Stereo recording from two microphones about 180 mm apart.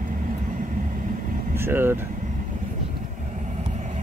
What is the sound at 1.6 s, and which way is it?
Speech, 15° right (ahead or behind).